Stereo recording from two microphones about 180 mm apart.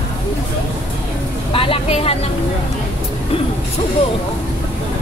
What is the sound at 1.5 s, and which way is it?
Vehicle, 30° left (ahead or behind).